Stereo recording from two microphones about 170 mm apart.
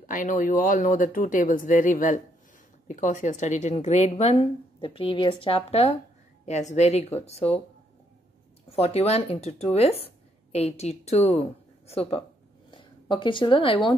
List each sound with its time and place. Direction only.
0.0 s a woman's voice: 50° left (ahead or behind)
8.6 s a woman's voice: 35° left (ahead or behind)